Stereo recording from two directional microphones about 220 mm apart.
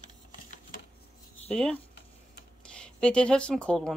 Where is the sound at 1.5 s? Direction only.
5° left (ahead or behind).